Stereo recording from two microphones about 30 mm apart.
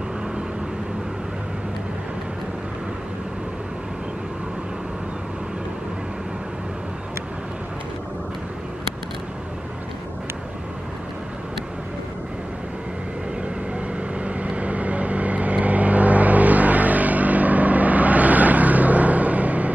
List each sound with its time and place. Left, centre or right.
13.7 s vehicle: right